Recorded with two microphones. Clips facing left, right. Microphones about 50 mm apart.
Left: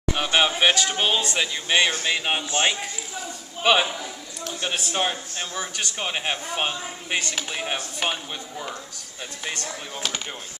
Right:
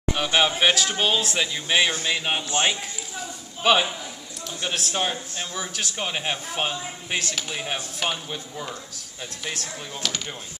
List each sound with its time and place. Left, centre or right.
0.1 s speech: centre
9.9 s speech: centre